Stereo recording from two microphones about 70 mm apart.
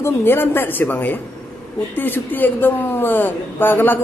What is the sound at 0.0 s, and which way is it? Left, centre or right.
Speech, left.